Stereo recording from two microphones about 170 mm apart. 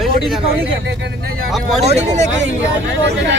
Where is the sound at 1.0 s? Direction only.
80° right.